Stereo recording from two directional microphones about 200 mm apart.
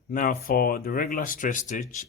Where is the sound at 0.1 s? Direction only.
45° left (ahead or behind).